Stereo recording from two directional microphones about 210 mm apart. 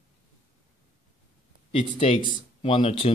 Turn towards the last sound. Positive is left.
turn(degrees=30)  # may be behind; listen again after turning